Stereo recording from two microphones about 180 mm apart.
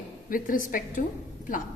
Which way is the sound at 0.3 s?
50° left (ahead or behind).